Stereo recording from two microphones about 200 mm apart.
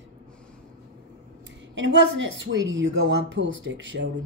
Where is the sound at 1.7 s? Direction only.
65° right (ahead or behind).